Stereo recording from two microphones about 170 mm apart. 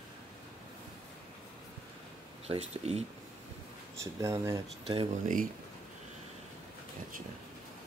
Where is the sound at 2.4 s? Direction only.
40° right (ahead or behind).